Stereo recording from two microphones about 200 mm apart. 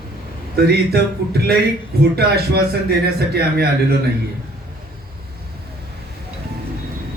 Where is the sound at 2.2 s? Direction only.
50° right (ahead or behind).